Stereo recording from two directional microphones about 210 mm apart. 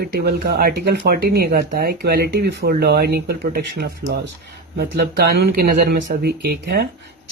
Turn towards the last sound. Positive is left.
turn(degrees=-50)  # may be behind; listen again after turning